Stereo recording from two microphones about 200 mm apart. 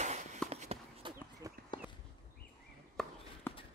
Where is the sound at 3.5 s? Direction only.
10° left (ahead or behind).